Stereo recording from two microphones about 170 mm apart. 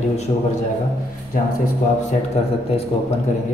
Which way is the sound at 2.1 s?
35° left (ahead or behind).